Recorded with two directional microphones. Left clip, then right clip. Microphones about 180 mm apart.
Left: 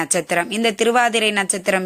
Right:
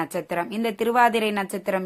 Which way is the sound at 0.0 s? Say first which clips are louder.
Left 7 dB; 20° left (ahead or behind).